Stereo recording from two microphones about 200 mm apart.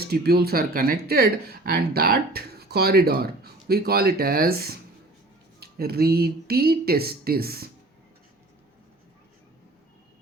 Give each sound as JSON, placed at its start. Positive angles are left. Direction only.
{"t": 0.0, "sound": "speech", "side_deg": -50}